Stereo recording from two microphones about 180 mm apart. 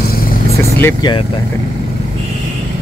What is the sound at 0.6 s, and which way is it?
Vehicle, 15° left (ahead or behind).